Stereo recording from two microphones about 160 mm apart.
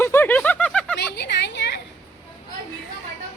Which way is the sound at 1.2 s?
90° left.